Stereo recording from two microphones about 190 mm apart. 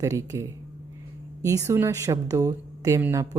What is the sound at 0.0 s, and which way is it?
A woman's voice, 20° right (ahead or behind).